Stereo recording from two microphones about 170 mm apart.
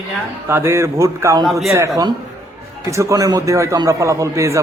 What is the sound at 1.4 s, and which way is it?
Speech, centre (ahead or behind).